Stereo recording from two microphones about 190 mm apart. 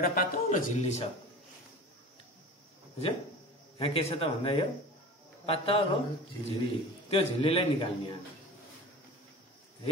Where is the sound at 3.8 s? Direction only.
30° left (ahead or behind).